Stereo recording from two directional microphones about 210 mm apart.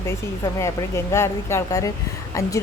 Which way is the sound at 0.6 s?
15° left (ahead or behind).